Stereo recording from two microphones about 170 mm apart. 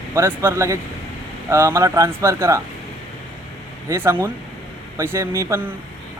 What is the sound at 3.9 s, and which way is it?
Speech, 15° right (ahead or behind).